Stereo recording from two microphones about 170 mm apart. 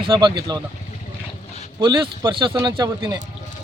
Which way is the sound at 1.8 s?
25° right (ahead or behind).